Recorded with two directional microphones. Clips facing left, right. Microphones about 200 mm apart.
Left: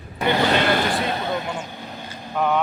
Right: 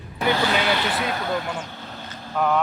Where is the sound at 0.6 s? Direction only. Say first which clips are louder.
Left 3 dB; 50° left (ahead or behind).